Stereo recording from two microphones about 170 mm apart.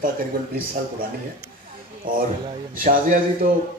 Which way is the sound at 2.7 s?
55° right (ahead or behind).